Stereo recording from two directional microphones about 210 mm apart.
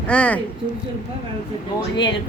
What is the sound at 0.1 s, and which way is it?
Speech, 5° left (ahead or behind).